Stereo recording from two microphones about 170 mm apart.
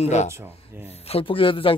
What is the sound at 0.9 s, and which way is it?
Speech, 35° left (ahead or behind).